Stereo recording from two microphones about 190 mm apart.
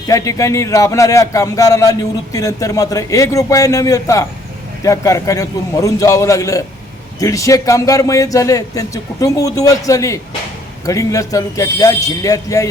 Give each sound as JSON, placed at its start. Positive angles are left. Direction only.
{"t": 0.1, "sound": "speech", "side_deg": 15}